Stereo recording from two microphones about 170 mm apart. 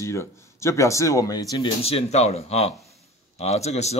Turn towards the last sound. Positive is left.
turn(degrees=40)  # may be behind; listen again after turning